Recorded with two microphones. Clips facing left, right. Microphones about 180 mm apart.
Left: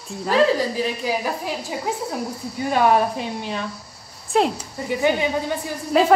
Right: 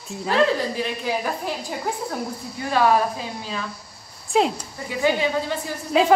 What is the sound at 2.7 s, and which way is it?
Speech, 20° left (ahead or behind).